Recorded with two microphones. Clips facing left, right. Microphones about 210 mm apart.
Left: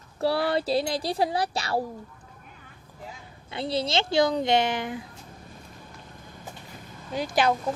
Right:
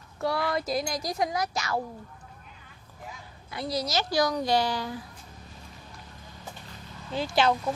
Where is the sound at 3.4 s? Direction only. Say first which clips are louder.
Left 3 dB; 25° left (ahead or behind).